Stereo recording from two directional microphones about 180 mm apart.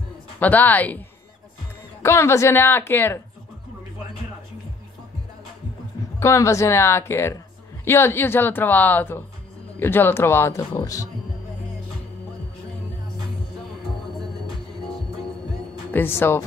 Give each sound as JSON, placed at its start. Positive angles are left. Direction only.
{"t": 0.4, "sound": "speech", "side_deg": 10}
{"t": 2.0, "sound": "speech", "side_deg": 15}
{"t": 6.1, "sound": "speech", "side_deg": 15}
{"t": 15.9, "sound": "speech", "side_deg": 10}